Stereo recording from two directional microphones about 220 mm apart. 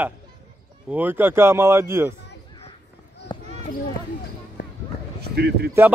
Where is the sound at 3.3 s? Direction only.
20° left (ahead or behind).